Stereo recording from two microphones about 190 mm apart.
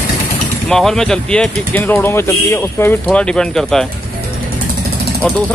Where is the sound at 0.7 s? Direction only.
Centre (ahead or behind).